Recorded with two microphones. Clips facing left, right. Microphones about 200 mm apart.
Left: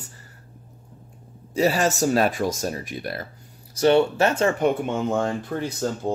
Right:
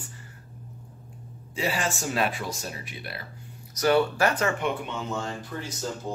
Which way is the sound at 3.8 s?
25° left (ahead or behind).